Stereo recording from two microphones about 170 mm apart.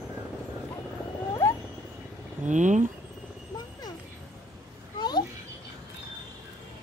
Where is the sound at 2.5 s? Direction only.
45° right (ahead or behind).